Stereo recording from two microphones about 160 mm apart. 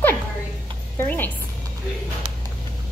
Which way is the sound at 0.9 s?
10° left (ahead or behind).